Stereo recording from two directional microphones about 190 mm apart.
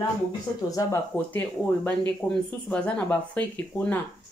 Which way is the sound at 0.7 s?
15° left (ahead or behind).